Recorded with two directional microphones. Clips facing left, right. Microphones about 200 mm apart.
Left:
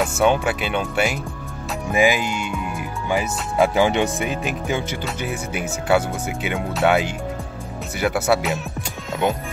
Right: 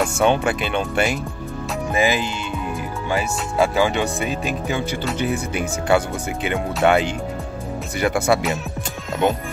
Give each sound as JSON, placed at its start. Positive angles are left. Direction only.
{"t": 0.0, "sound": "speech", "side_deg": 5}
{"t": 5.0, "sound": "speech", "side_deg": 5}